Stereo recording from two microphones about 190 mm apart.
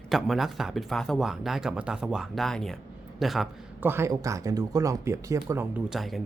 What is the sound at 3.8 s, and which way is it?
Speech, 10° right (ahead or behind).